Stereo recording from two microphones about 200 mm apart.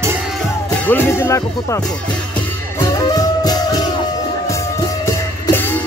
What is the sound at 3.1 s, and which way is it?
Music, 20° left (ahead or behind).